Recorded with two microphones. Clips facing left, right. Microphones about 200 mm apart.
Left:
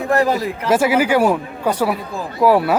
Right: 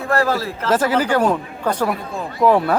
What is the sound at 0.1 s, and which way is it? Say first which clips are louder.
A man's voice: left 2 dB; 15° left (ahead or behind).